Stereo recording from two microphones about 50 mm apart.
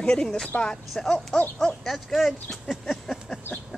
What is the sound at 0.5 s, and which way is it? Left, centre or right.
Speech, left.